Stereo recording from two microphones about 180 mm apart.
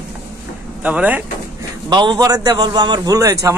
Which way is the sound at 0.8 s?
10° right (ahead or behind).